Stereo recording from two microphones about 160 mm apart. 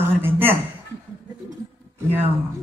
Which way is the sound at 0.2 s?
15° right (ahead or behind).